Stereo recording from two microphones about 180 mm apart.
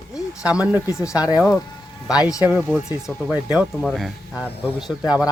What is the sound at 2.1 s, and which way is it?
Speech, 20° left (ahead or behind).